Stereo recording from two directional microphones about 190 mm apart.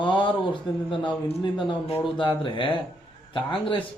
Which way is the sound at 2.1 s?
25° left (ahead or behind).